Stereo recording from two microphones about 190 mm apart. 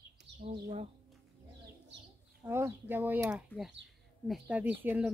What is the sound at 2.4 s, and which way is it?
Speech, 15° right (ahead or behind).